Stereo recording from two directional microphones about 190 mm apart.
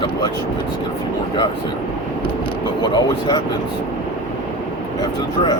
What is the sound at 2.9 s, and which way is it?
Speech, 20° left (ahead or behind).